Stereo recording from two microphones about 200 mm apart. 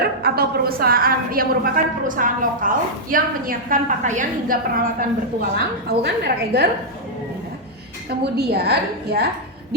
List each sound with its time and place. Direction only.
0.0 s a woman's voice: 50° right (ahead or behind)
4.9 s a woman's voice: 50° right (ahead or behind)
8.4 s a woman's voice: 55° right (ahead or behind)